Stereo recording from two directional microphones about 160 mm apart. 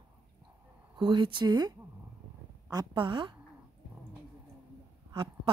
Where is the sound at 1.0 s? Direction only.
30° right (ahead or behind).